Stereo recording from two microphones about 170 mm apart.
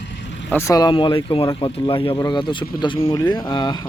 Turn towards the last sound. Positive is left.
turn(degrees=25)  # may be behind; listen again after turning